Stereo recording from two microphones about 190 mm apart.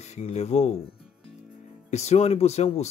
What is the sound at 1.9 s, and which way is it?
Speech, 35° left (ahead or behind).